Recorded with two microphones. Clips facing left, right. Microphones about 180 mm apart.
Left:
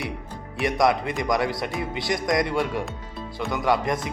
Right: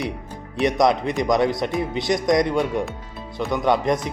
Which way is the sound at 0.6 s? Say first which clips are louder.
Right 3 dB; 20° right (ahead or behind).